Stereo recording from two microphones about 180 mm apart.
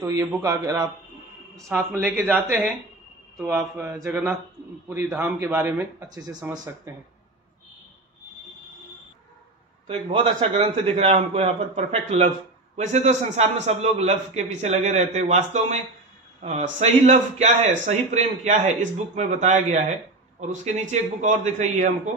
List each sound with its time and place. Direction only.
0.0 s a man's voice: 20° right (ahead or behind)
3.4 s speech: 10° right (ahead or behind)
9.8 s a man's voice: 30° right (ahead or behind)